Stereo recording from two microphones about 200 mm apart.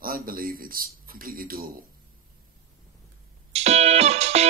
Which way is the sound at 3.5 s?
35° right (ahead or behind).